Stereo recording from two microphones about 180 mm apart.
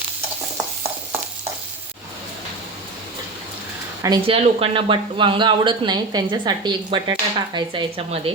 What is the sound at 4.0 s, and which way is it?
Speech, 20° right (ahead or behind).